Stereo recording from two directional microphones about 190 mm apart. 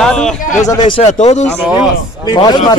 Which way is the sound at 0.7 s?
25° left (ahead or behind).